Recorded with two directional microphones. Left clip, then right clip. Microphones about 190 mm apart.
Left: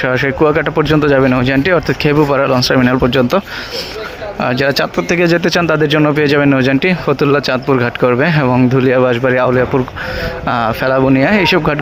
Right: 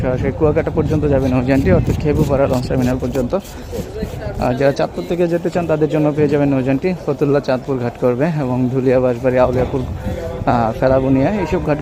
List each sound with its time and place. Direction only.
0.0 s speech: 10° left (ahead or behind)
4.4 s speech: centre (ahead or behind)